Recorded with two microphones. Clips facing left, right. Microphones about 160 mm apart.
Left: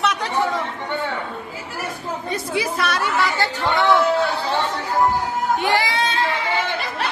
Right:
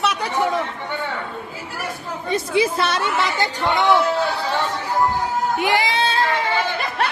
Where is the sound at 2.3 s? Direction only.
25° right (ahead or behind).